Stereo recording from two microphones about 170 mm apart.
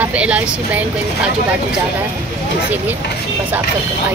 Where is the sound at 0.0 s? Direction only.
5° right (ahead or behind).